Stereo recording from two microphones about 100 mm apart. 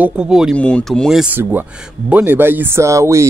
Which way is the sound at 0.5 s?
10° left (ahead or behind).